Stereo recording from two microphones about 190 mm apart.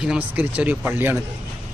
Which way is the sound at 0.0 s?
5° right (ahead or behind).